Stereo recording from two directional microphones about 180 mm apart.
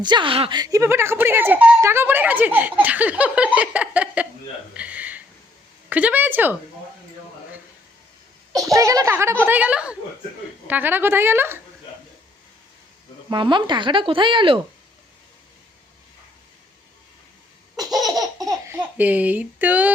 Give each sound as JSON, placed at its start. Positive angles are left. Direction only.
{"t": 0.0, "sound": "speech", "side_deg": -25}
{"t": 4.7, "sound": "a sound", "side_deg": -5}
{"t": 5.9, "sound": "speech", "side_deg": -10}
{"t": 8.7, "sound": "speech", "side_deg": -20}
{"t": 13.3, "sound": "speech", "side_deg": -25}
{"t": 18.1, "sound": "laughter", "side_deg": -20}